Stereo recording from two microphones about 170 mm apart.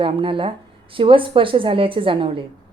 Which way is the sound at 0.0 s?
30° right (ahead or behind).